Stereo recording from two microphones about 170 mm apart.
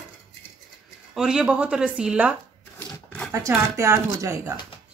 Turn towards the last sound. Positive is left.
turn(degrees=-15)  # may be behind; listen again after turning